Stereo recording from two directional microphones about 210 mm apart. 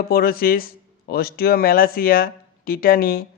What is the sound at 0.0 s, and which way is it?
A man's voice, 45° left (ahead or behind).